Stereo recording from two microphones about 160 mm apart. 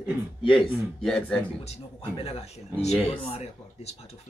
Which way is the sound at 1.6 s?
40° left (ahead or behind).